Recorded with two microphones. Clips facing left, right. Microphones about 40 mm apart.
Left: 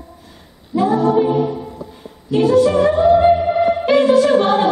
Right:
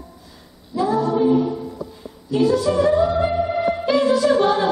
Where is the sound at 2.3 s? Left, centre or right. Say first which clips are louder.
Left 5 dB; left.